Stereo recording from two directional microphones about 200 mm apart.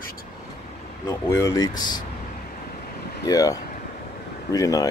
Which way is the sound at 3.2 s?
20° left (ahead or behind).